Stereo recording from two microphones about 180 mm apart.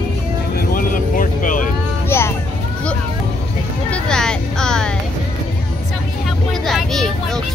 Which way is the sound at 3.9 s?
5° left (ahead or behind).